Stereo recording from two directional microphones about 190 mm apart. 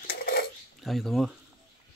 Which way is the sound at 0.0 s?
50° left (ahead or behind).